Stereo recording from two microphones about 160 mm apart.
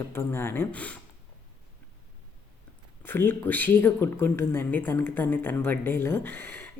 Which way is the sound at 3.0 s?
15° left (ahead or behind).